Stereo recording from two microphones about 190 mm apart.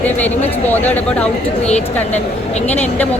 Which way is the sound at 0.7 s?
10° left (ahead or behind).